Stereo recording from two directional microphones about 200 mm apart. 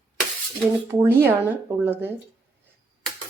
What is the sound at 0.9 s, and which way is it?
A woman's voice, 10° right (ahead or behind).